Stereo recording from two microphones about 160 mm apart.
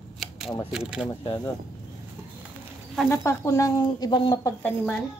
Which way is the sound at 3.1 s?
20° left (ahead or behind).